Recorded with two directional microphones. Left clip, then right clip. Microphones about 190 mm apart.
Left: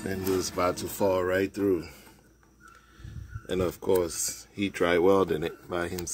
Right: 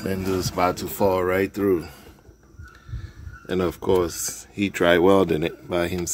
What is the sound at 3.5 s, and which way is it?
Speech, 20° right (ahead or behind).